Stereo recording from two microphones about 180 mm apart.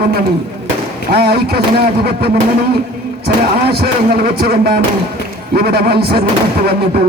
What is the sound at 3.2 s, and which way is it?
Speech, 60° right (ahead or behind).